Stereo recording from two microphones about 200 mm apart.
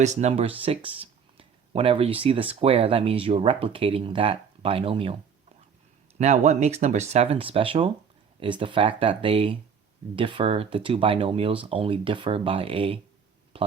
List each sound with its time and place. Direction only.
0.0 s speech: 35° right (ahead or behind)
6.1 s speech: 35° right (ahead or behind)